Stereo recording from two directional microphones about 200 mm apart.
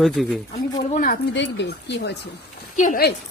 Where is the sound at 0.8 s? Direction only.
40° left (ahead or behind).